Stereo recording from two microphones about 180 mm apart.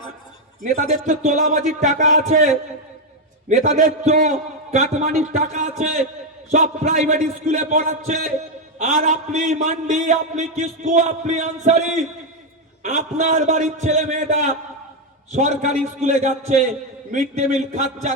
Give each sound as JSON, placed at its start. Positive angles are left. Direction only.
{"t": 0.6, "sound": "a man's voice", "side_deg": -45}